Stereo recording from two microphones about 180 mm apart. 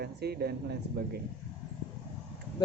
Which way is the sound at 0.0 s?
65° right (ahead or behind).